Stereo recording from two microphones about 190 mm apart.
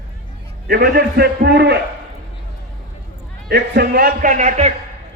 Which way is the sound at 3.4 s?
55° right (ahead or behind).